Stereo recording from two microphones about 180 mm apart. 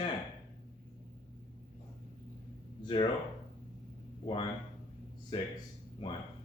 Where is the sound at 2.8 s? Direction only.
25° left (ahead or behind).